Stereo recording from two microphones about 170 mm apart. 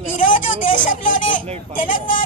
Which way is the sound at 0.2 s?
50° left (ahead or behind).